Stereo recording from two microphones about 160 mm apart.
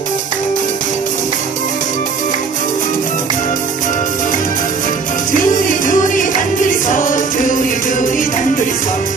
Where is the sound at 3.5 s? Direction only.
55° left (ahead or behind).